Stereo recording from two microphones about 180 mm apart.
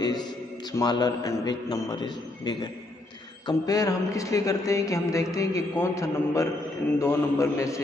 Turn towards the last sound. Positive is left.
turn(degrees=15)  # may be behind; listen again after turning